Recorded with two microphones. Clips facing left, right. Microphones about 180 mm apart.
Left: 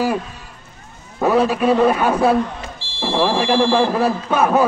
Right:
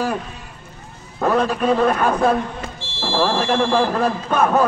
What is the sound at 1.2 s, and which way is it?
A man's voice, 5° left (ahead or behind).